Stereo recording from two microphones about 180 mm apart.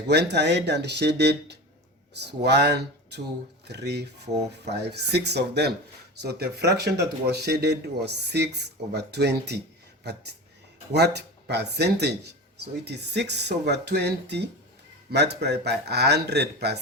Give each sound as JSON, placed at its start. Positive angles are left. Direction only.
{"t": 0.1, "sound": "speech", "side_deg": -70}